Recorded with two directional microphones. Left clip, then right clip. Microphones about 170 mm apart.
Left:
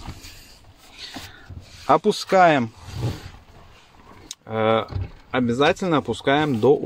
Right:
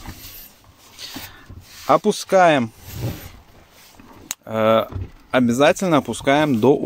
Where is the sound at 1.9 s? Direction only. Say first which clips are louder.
Right 1 dB; 10° right (ahead or behind).